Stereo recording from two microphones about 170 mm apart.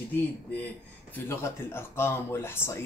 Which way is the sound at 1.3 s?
15° left (ahead or behind).